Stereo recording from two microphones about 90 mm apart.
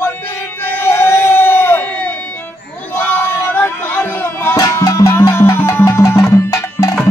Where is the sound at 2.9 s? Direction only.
25° left (ahead or behind).